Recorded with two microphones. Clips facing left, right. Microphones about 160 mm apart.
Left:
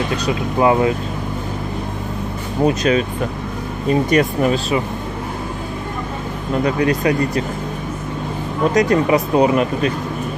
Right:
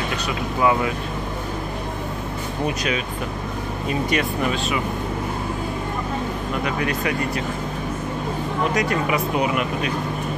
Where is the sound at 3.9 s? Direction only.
40° left (ahead or behind).